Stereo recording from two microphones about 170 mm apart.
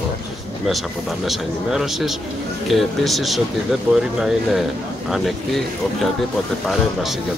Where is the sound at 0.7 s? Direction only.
Centre (ahead or behind).